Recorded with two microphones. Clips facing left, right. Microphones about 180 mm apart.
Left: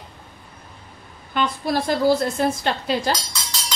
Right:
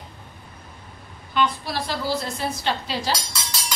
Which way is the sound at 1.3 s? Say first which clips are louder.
Left 2 dB; 50° left (ahead or behind).